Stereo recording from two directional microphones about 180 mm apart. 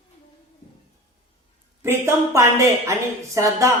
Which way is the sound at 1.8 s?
15° right (ahead or behind).